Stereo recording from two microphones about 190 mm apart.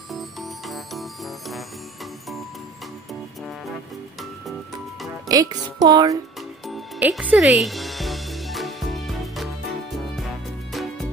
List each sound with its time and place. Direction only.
5.3 s speech: 20° right (ahead or behind)
6.7 s music: 5° right (ahead or behind)
10.7 s music: centre (ahead or behind)